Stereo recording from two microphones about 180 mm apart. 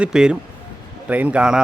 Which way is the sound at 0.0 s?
5° right (ahead or behind).